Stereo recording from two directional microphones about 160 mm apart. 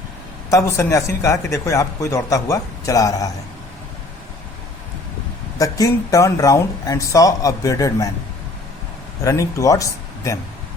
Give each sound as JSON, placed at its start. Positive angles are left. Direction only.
{"t": 0.5, "sound": "speech", "side_deg": 20}
{"t": 5.5, "sound": "speech", "side_deg": 20}
{"t": 9.2, "sound": "speech", "side_deg": 20}